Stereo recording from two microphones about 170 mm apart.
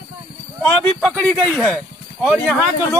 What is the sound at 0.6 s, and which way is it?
Speech, 10° left (ahead or behind).